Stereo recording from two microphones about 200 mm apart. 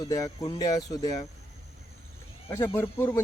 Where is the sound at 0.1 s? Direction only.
15° left (ahead or behind).